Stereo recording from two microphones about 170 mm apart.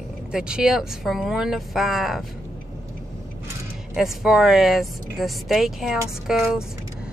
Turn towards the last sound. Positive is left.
turn(degrees=-5)  # may be behind; listen again after turning